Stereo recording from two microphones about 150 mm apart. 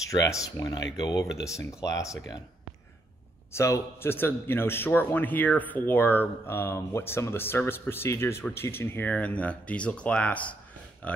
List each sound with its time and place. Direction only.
0.0 s speech: 20° left (ahead or behind)
3.5 s a man's voice: 20° left (ahead or behind)